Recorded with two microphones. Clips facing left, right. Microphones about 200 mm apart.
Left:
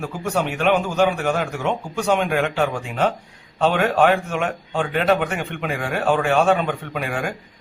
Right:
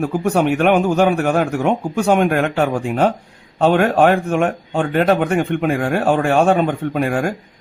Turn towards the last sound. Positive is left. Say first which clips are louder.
# right 7 dB
turn(degrees=-50)  # may be behind; listen again after turning